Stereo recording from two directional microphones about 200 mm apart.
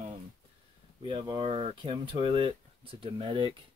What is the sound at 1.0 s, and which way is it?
Speech, 20° right (ahead or behind).